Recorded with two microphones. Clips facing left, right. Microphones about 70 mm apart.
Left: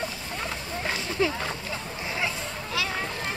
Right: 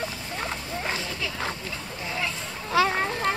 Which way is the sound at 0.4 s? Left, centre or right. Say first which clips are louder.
Right 1 dB; centre.